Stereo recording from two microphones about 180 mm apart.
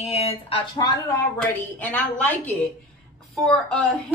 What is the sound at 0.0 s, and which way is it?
Speech, 35° left (ahead or behind).